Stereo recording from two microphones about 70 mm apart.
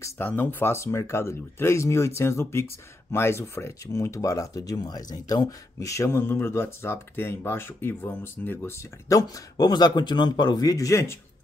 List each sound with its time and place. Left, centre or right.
0.2 s speech: left
3.8 s speech: left
6.0 s speech: left
9.1 s speech: left
10.9 s speech: left